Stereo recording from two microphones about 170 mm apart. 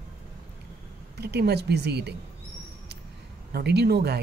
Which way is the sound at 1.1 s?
75° right (ahead or behind).